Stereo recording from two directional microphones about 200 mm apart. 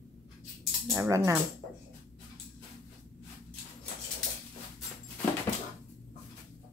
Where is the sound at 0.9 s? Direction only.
15° right (ahead or behind).